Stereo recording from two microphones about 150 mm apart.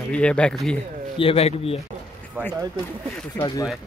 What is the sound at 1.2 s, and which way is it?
Speech, 40° left (ahead or behind).